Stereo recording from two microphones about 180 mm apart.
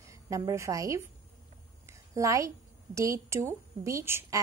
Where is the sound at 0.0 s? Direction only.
15° right (ahead or behind).